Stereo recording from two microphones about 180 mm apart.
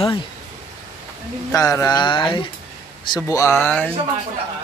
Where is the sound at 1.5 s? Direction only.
20° left (ahead or behind).